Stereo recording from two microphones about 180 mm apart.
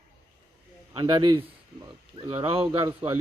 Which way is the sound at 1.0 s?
25° right (ahead or behind).